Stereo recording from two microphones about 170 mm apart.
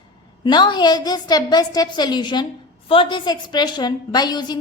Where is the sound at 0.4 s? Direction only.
25° left (ahead or behind).